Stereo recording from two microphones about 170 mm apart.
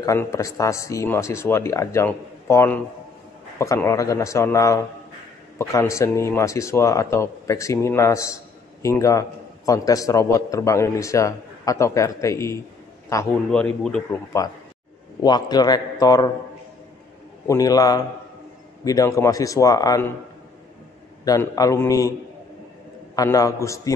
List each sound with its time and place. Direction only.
0.0 s a man's voice: 20° left (ahead or behind)
15.2 s a man's voice: 25° left (ahead or behind)
17.5 s a man's voice: 20° left (ahead or behind)
21.2 s a man's voice: 20° left (ahead or behind)
23.1 s a man's voice: 20° left (ahead or behind)